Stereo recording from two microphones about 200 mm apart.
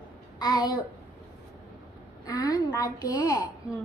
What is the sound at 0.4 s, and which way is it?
Speech, 20° left (ahead or behind).